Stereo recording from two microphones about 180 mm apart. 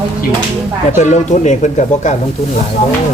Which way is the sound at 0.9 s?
40° left (ahead or behind).